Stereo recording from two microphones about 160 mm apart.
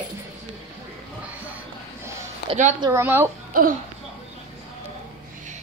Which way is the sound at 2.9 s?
15° right (ahead or behind).